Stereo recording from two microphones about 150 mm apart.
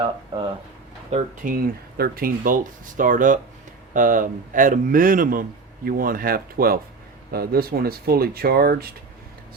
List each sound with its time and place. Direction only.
0.0 s speech: 30° right (ahead or behind)
1.1 s speech: 50° right (ahead or behind)
1.5 s speech: 70° right (ahead or behind)
7.3 s speech: 90° right